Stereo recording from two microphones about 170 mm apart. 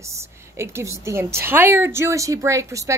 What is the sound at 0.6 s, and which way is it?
A woman's voice, 15° right (ahead or behind).